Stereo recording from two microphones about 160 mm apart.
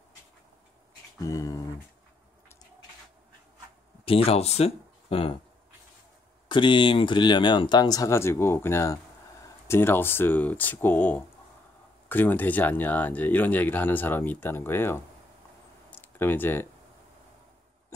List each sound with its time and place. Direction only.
1.2 s speech: 20° left (ahead or behind)
4.0 s speech: 35° left (ahead or behind)
6.5 s speech: 30° left (ahead or behind); by 15.0 s 15° left (ahead or behind)
16.0 s speech: 10° left (ahead or behind)